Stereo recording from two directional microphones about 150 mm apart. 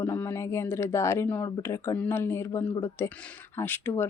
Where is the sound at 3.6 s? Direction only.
15° left (ahead or behind).